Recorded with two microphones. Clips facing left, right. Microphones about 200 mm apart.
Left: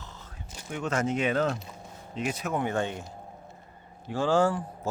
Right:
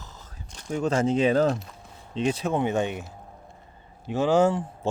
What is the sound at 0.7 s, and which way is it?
Speech, 30° right (ahead or behind).